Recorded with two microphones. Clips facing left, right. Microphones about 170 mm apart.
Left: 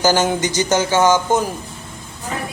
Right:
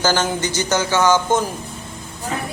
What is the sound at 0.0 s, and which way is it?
Speech, 15° left (ahead or behind).